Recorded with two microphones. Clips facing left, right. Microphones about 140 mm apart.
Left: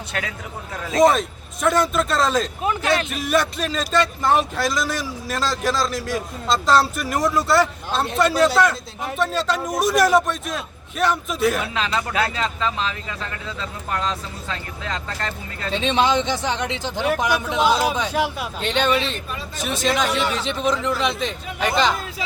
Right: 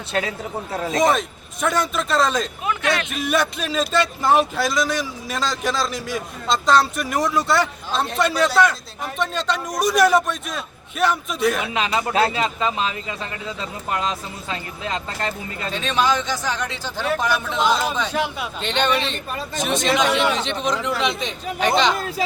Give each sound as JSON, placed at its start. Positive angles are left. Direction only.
{"t": 0.1, "sound": "speech", "side_deg": -30}
{"t": 1.6, "sound": "speech", "side_deg": 0}
{"t": 2.6, "sound": "speech", "side_deg": 35}
{"t": 3.1, "sound": "speech", "side_deg": 0}
{"t": 11.6, "sound": "speech", "side_deg": -15}
{"t": 15.7, "sound": "speech", "side_deg": 25}
{"t": 20.1, "sound": "speech", "side_deg": -70}
{"t": 20.3, "sound": "speech", "side_deg": 5}